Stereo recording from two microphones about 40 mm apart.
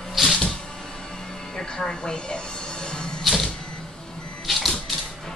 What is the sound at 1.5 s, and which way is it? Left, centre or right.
Speech, centre.